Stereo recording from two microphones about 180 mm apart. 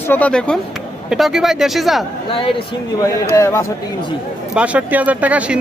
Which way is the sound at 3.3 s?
15° left (ahead or behind).